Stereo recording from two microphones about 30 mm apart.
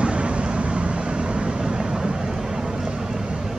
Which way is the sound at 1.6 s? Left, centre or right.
Right.